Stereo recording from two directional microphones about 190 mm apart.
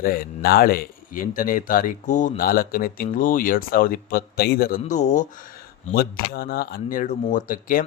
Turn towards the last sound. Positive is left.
turn(degrees=45)  # may be behind; listen again after turning